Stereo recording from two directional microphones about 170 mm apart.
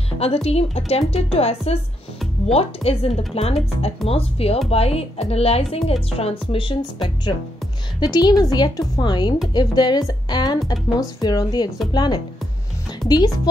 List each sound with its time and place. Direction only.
0.2 s a woman's voice: 35° left (ahead or behind)